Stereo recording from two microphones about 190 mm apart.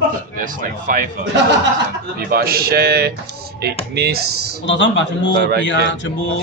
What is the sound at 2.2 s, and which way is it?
A man's voice, 55° right (ahead or behind).